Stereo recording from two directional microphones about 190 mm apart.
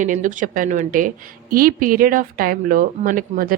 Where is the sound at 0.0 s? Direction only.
45° right (ahead or behind).